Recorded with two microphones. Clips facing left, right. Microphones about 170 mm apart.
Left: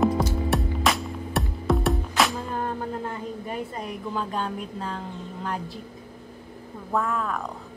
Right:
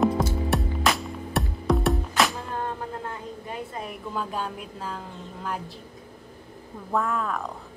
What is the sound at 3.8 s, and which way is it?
A woman's voice, 5° right (ahead or behind).